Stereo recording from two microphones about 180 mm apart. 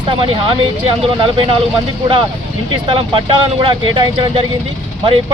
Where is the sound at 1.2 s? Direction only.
30° right (ahead or behind).